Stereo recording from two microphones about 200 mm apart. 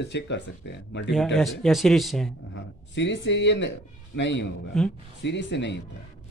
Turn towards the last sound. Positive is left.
turn(degrees=60)  # may be behind; listen again after turning